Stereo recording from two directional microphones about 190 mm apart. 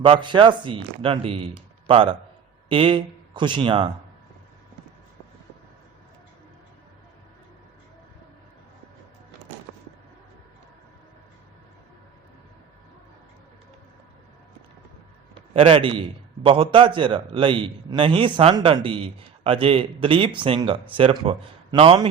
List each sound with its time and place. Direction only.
0.0 s a man's voice: 25° right (ahead or behind)
15.5 s a man's voice: 25° right (ahead or behind)